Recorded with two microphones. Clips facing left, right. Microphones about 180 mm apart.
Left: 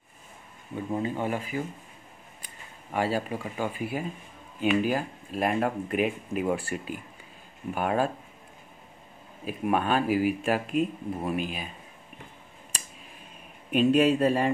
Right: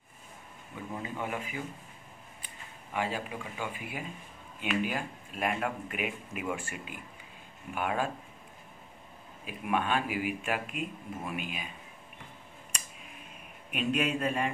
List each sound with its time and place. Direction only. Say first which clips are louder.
0.9 s speech: left 7 dB; 30° left (ahead or behind)
9.5 s speech: left 5 dB; 40° left (ahead or behind)
12.7 s a sound: left 2 dB; 35° left (ahead or behind)
13.7 s speech: left 9 dB; 30° left (ahead or behind)